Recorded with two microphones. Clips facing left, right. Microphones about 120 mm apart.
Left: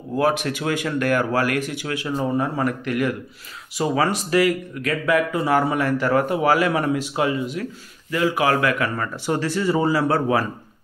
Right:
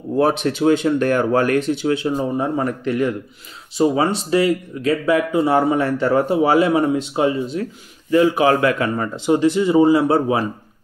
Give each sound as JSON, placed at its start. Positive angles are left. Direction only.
{"t": 0.2, "sound": "speech", "side_deg": -25}